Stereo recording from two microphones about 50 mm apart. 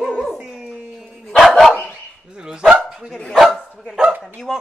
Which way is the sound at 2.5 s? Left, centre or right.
Centre.